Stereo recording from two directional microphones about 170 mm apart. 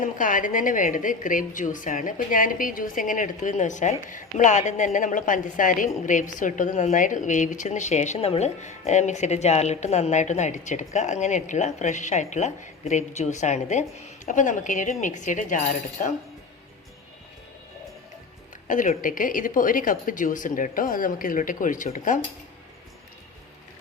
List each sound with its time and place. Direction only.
0.0 s a woman's voice: 50° left (ahead or behind)
18.7 s a woman's voice: 50° left (ahead or behind)